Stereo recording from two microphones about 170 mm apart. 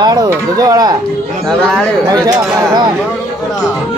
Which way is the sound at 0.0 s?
25° right (ahead or behind).